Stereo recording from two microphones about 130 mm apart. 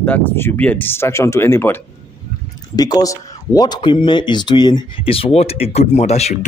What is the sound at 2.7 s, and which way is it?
Speech, 30° left (ahead or behind).